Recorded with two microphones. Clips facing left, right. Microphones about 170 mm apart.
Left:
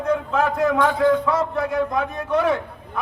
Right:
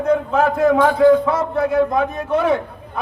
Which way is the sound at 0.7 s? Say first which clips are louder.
Right 7 dB; 30° right (ahead or behind).